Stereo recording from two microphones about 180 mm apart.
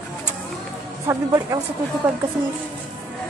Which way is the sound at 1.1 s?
15° right (ahead or behind).